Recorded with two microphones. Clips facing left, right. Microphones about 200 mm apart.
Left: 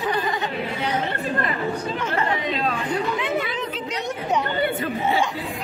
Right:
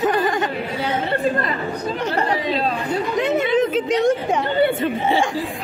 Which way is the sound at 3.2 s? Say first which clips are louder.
Right 8 dB; 45° right (ahead or behind).